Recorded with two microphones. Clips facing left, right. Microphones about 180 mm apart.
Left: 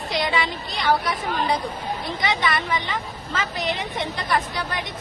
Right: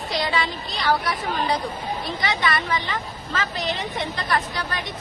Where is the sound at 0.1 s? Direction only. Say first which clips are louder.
Left 1 dB; 20° left (ahead or behind).